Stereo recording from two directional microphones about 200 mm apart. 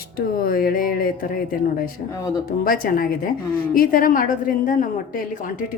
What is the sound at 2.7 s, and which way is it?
A woman's voice, 45° left (ahead or behind).